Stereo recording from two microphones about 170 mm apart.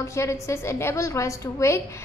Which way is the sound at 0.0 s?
15° left (ahead or behind).